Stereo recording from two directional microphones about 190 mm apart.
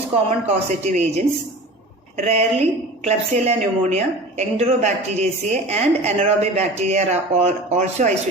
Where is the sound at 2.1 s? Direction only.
35° right (ahead or behind).